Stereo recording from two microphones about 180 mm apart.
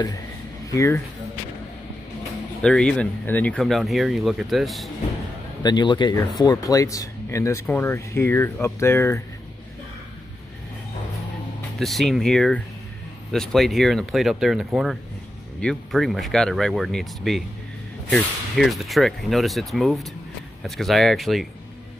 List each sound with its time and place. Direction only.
0.7 s speech: 15° left (ahead or behind)
2.6 s speech: 5° left (ahead or behind)
5.6 s speech: 25° left (ahead or behind)
11.8 s speech: centre (ahead or behind)